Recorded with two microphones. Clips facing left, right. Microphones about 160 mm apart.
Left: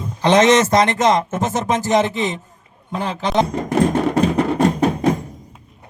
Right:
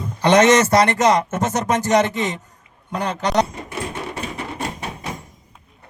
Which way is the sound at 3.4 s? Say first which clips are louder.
Left 12 dB; 65° left (ahead or behind).